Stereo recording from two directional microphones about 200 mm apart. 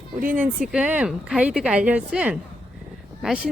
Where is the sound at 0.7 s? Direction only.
5° right (ahead or behind).